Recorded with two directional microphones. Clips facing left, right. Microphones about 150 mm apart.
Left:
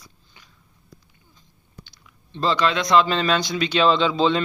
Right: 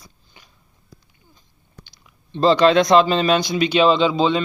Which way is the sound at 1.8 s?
20° right (ahead or behind).